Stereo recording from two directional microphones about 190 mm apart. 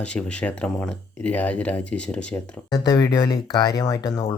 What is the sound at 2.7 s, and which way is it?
Speech, 20° left (ahead or behind).